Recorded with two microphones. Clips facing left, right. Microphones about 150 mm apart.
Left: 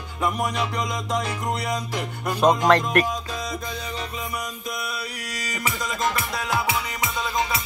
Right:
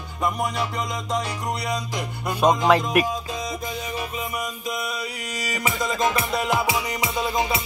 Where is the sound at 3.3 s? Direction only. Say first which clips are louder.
Right 1 dB; 20° right (ahead or behind).